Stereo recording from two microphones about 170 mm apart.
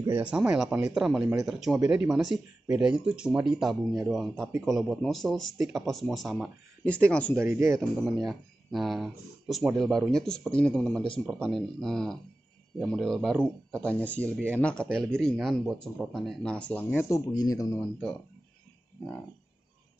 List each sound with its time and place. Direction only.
0.1 s speech: 5° right (ahead or behind)
7.3 s speech: 15° right (ahead or behind)
8.0 s speech: centre (ahead or behind); by 17.8 s 20° left (ahead or behind)